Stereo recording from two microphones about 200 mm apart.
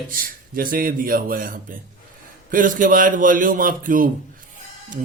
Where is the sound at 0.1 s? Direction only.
45° right (ahead or behind).